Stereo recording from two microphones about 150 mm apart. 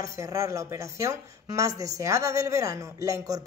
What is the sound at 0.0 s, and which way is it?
Speech, 20° right (ahead or behind).